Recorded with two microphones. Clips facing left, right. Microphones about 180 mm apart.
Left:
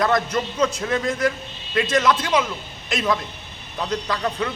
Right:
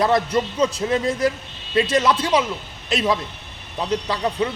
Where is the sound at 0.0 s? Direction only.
30° right (ahead or behind).